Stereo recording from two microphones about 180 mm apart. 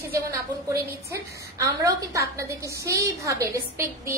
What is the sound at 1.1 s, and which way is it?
A woman's voice, 15° right (ahead or behind).